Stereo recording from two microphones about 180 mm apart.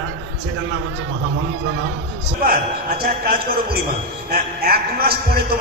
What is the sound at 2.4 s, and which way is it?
A man's voice, 55° right (ahead or behind).